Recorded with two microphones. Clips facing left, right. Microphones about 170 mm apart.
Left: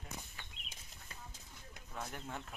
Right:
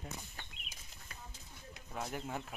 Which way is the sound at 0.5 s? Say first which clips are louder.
Right 1 dB; 35° left (ahead or behind).